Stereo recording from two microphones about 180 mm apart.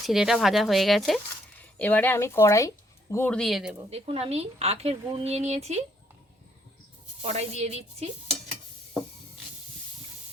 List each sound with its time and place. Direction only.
0.0 s speech: centre (ahead or behind)
3.8 s speech: 35° right (ahead or behind)
7.2 s speech: 35° right (ahead or behind)
8.3 s stir: centre (ahead or behind)